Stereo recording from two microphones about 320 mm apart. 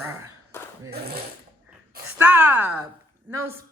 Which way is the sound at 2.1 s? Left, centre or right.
Centre.